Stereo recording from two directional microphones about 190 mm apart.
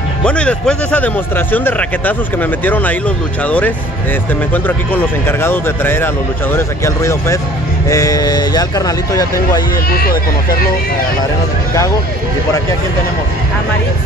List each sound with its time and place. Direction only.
0.2 s a man's voice: 5° left (ahead or behind)
9.8 s speech: 50° left (ahead or behind)